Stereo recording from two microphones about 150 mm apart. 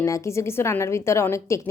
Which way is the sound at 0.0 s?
20° left (ahead or behind).